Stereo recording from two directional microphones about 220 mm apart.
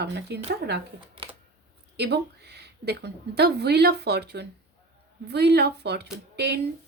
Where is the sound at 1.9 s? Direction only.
50° right (ahead or behind).